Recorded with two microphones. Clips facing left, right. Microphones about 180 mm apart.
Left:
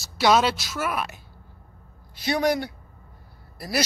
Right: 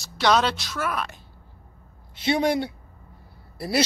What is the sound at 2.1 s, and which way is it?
Speech, 25° right (ahead or behind).